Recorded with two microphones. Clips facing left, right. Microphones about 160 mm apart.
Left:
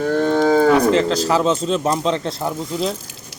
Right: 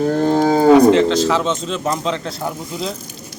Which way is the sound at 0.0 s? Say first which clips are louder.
Right 1 dB; 30° right (ahead or behind).